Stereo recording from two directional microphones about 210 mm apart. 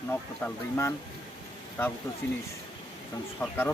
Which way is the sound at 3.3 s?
10° left (ahead or behind).